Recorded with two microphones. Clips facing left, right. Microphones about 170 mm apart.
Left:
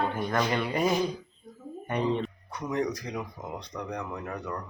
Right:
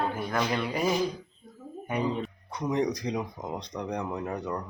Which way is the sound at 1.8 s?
5° right (ahead or behind).